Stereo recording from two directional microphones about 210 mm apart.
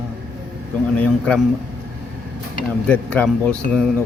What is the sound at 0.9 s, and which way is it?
Speech, 5° left (ahead or behind).